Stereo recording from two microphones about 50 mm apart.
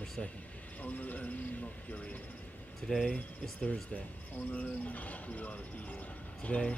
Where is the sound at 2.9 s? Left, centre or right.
Centre.